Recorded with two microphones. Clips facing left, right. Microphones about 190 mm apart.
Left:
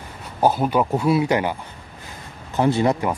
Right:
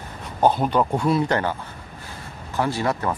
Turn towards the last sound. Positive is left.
turn(degrees=15)  # may be behind; listen again after turning